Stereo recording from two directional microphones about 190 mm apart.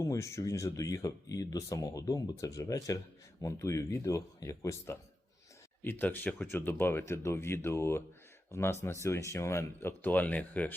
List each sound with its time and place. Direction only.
0.0 s speech: 15° left (ahead or behind)